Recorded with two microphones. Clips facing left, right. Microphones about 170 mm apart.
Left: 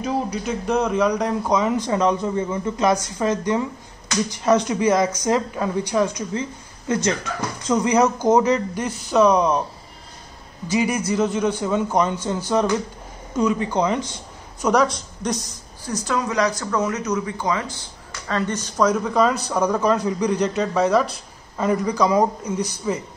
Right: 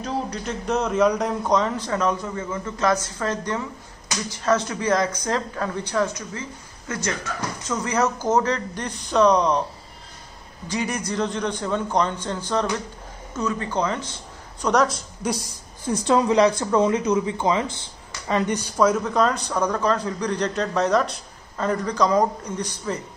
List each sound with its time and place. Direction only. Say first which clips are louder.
0.0 s speech: left 4 dB; 5° left (ahead or behind)
10.7 s speech: left 5 dB; 5° left (ahead or behind)
14.6 s speech: left 2 dB; centre (ahead or behind)
15.8 s speech: right 4 dB; 30° right (ahead or behind)
18.8 s speech: left 1 dB; centre (ahead or behind)